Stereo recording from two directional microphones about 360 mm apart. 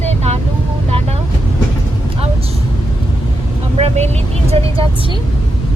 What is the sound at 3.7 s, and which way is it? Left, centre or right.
Speech, centre.